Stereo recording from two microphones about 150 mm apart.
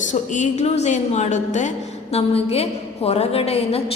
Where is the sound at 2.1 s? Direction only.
40° left (ahead or behind).